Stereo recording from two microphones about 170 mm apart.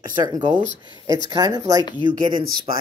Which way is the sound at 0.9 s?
20° right (ahead or behind).